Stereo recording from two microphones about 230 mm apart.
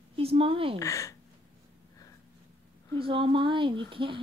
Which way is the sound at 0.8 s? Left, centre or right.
Centre.